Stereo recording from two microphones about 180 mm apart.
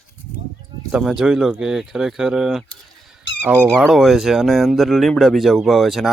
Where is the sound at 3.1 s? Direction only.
10° right (ahead or behind).